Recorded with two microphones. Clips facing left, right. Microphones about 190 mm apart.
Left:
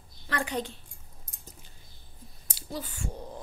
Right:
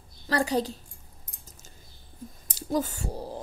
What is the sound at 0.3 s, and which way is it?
Speech, 35° right (ahead or behind).